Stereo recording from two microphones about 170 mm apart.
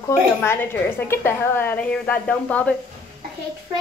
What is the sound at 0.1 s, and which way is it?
A woman's voice, 15° left (ahead or behind).